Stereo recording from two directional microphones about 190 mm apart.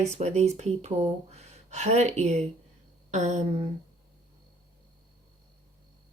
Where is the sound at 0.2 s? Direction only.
35° right (ahead or behind).